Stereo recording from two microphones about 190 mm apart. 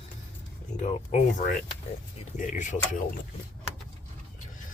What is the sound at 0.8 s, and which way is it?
Speech, 40° left (ahead or behind).